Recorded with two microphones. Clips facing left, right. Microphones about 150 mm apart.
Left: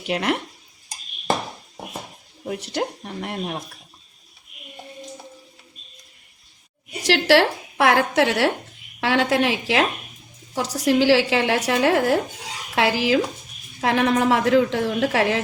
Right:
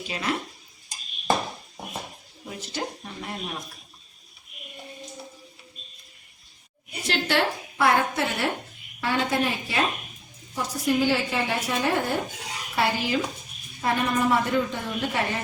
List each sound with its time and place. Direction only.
0.0 s speech: 65° left (ahead or behind)
2.7 s speech: 60° left (ahead or behind)
7.0 s a woman's voice: 80° left